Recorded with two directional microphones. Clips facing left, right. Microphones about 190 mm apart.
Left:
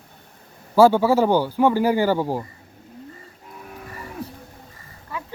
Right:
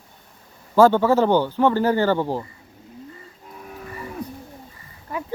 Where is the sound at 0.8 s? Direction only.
10° left (ahead or behind).